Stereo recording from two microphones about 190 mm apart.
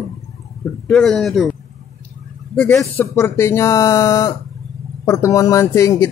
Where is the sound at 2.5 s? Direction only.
10° left (ahead or behind).